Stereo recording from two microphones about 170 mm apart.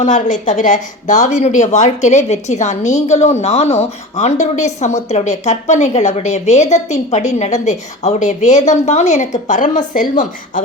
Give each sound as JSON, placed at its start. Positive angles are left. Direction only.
{"t": 0.0, "sound": "a woman's voice", "side_deg": 45}